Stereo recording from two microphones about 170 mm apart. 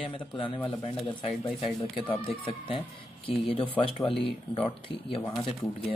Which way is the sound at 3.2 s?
30° left (ahead or behind).